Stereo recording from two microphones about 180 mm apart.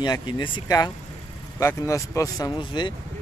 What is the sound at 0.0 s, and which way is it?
Speech, 25° left (ahead or behind).